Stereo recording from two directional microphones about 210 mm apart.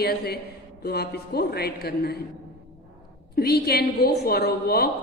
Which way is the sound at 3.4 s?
50° left (ahead or behind).